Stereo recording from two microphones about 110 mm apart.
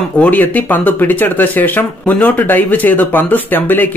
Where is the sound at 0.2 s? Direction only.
15° left (ahead or behind).